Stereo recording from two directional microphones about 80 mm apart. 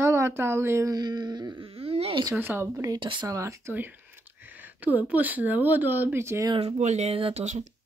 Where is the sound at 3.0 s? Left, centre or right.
Right.